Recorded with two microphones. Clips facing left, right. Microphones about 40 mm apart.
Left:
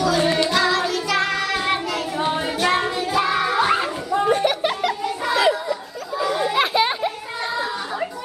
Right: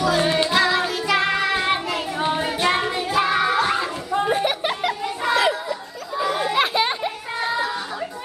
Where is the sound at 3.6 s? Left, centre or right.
Centre.